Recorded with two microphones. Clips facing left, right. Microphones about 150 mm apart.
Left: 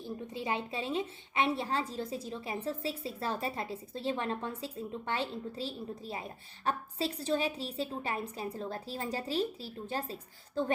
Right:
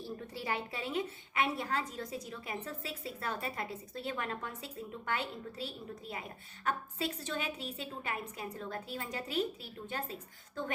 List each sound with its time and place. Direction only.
0.0 s a woman's voice: 20° left (ahead or behind)